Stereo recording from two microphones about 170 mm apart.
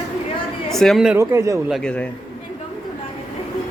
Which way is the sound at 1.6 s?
Centre (ahead or behind).